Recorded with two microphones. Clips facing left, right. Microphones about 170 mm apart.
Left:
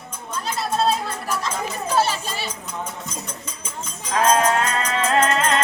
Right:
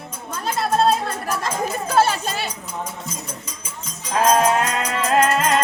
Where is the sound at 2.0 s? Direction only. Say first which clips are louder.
Right 4 dB; 50° right (ahead or behind).